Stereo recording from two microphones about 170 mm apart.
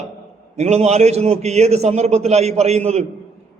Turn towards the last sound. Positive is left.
turn(degrees=-40)  # may be behind; listen again after turning